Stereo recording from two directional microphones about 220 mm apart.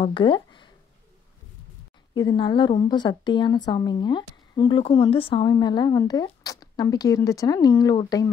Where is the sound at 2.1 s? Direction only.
20° left (ahead or behind).